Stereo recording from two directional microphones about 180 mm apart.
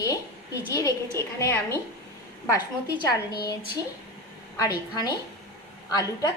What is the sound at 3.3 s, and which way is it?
Speech, 25° left (ahead or behind).